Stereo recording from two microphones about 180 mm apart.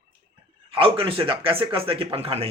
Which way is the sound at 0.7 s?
30° right (ahead or behind).